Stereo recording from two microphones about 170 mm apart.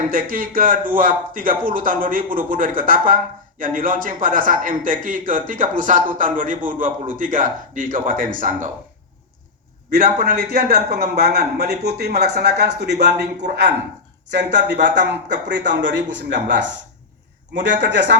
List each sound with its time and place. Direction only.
0.1 s a man's voice: 55° right (ahead or behind)
9.9 s a man's voice: 55° right (ahead or behind); by 18.2 s 90° right